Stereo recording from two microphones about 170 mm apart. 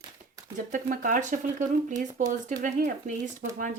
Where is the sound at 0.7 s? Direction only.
50° right (ahead or behind).